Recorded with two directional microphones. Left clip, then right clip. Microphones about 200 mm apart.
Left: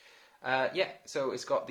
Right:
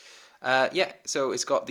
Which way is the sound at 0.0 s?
40° right (ahead or behind).